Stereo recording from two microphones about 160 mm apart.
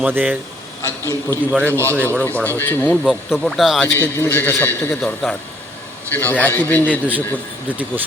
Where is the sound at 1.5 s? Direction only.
15° right (ahead or behind).